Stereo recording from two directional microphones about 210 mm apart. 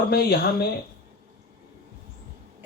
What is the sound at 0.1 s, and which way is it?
Speech, 50° left (ahead or behind).